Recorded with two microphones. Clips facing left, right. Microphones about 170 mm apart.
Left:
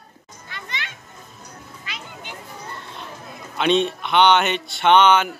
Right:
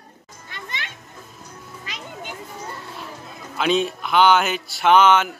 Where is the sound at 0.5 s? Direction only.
45° right (ahead or behind).